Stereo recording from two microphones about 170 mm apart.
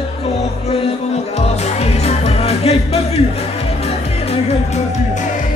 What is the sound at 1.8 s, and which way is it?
Music, 35° left (ahead or behind).